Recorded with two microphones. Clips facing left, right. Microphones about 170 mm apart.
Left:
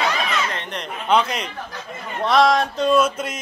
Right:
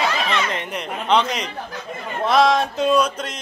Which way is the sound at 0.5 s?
5° right (ahead or behind).